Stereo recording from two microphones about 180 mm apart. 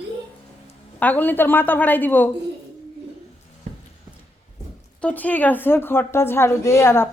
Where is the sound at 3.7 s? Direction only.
40° right (ahead or behind).